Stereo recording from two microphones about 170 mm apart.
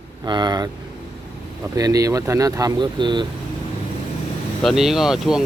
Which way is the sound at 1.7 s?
20° right (ahead or behind).